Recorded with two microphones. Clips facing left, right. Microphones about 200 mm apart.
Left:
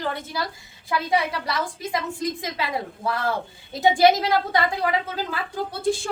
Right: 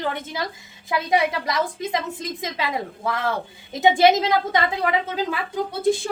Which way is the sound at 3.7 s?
20° right (ahead or behind).